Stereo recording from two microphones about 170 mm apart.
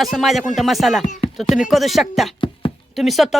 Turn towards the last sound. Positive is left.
turn(degrees=0)  # may be behind; listen again after turning